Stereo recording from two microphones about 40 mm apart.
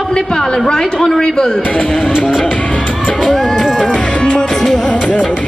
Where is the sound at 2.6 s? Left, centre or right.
Left.